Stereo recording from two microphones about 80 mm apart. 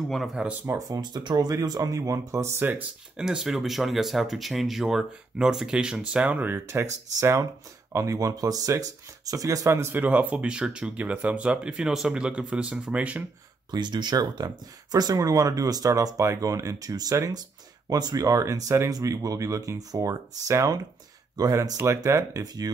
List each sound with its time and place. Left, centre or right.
0.1 s speech: centre
0.7 s speech: right
1.0 s speech: right
3.2 s speech: centre
6.7 s speech: right
9.9 s speech: right
13.7 s speech: right